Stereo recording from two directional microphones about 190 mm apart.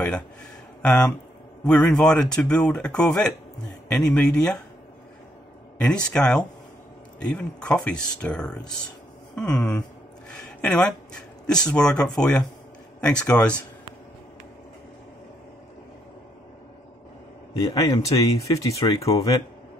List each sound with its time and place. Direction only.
0.8 s speech: 5° left (ahead or behind)
5.8 s speech: 5° left (ahead or behind)
17.6 s speech: 20° left (ahead or behind)